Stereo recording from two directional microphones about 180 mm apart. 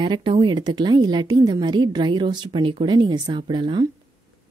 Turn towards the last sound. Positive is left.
turn(degrees=-25)  # may be behind; listen again after turning